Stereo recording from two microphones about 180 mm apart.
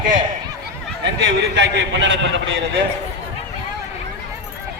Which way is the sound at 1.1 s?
75° right (ahead or behind).